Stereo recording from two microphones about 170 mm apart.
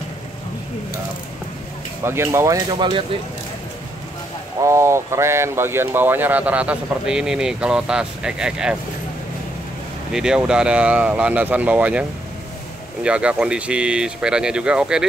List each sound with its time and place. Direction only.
2.0 s speech: 15° right (ahead or behind)
4.6 s speech: 15° right (ahead or behind)
10.1 s speech: 5° right (ahead or behind)